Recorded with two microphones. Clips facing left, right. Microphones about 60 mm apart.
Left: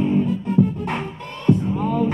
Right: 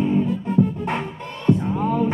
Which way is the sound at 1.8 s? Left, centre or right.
Right.